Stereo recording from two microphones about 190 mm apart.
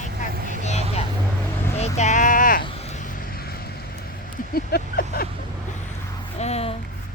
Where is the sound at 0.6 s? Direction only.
35° left (ahead or behind).